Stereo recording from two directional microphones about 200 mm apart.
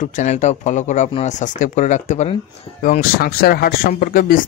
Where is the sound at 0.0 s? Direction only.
40° left (ahead or behind).